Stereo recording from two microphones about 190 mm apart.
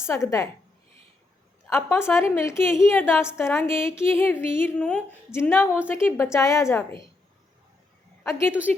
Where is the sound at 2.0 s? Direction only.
15° left (ahead or behind).